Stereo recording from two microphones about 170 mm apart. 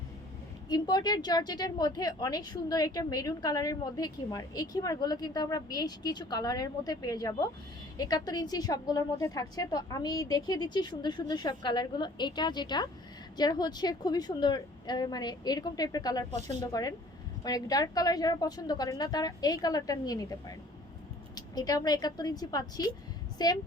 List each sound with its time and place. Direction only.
0.7 s speech: 25° left (ahead or behind)